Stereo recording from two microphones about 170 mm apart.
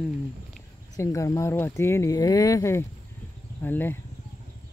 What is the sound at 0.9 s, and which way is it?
Speech, 20° left (ahead or behind).